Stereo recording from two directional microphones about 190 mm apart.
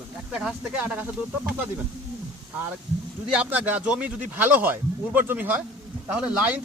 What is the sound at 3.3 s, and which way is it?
A man's voice, 5° right (ahead or behind).